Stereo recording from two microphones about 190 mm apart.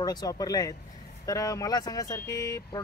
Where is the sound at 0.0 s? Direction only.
20° left (ahead or behind).